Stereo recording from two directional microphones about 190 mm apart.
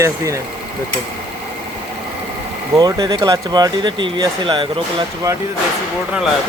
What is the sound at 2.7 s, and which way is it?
Speech, 20° right (ahead or behind).